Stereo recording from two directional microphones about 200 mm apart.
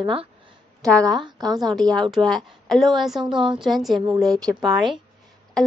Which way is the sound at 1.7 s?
Centre (ahead or behind).